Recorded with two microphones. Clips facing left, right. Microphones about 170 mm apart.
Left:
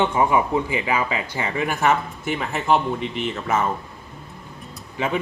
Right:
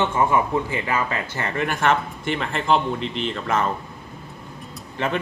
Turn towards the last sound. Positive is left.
turn(degrees=10)  # may be behind; listen again after turning